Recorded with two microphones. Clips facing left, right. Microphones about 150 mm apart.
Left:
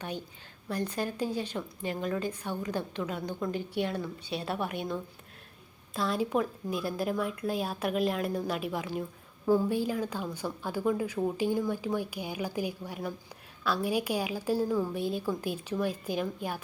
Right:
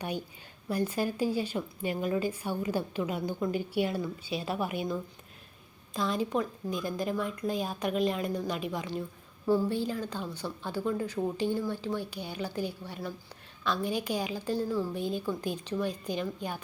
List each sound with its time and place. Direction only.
0.7 s a woman's voice: 10° right (ahead or behind)